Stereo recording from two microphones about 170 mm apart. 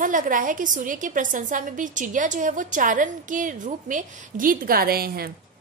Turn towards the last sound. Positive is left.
turn(degrees=-60)  # may be behind; listen again after turning